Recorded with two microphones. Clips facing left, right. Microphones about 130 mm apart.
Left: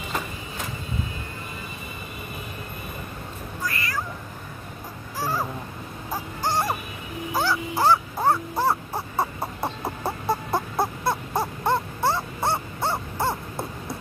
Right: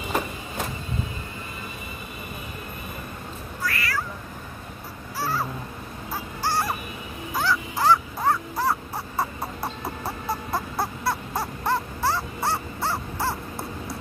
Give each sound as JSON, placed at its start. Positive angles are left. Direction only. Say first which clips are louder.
{"t": 3.6, "sound": "cat", "louder": "right 1 dB", "side_deg": 20}
{"t": 5.2, "sound": "a sound", "louder": "even", "side_deg": 15}
{"t": 6.1, "sound": "music", "louder": "left 1 dB", "side_deg": 20}
{"t": 7.3, "sound": "crow", "louder": "left 1 dB", "side_deg": 30}